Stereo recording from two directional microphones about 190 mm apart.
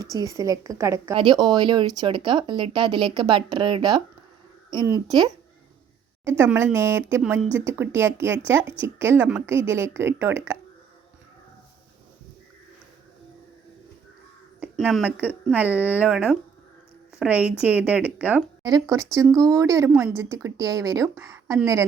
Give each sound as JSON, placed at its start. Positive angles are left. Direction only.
{"t": 0.0, "sound": "a woman's voice", "side_deg": -20}
{"t": 6.2, "sound": "a woman's voice", "side_deg": -15}
{"t": 14.8, "sound": "a woman's voice", "side_deg": 0}
{"t": 18.6, "sound": "a woman's voice", "side_deg": -20}